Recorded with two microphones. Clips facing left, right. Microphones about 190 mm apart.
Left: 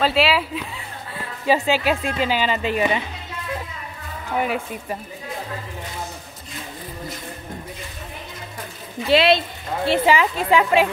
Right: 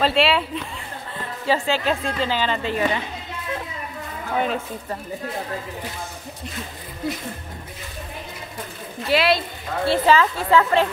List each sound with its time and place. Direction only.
0.0 s speech: centre (ahead or behind)
1.1 s speech: 15° left (ahead or behind)
4.4 s speech: 10° left (ahead or behind)
9.1 s a woman's voice: 25° left (ahead or behind)